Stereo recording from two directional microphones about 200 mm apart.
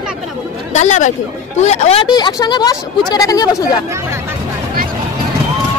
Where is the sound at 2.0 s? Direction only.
20° left (ahead or behind).